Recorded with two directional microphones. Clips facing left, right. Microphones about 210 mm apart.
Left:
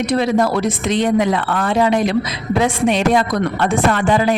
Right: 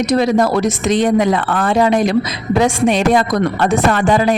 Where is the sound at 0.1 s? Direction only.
40° right (ahead or behind).